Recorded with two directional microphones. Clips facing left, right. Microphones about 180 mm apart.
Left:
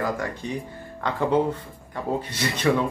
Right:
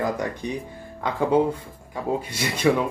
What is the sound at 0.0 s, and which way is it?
Speech, 20° right (ahead or behind).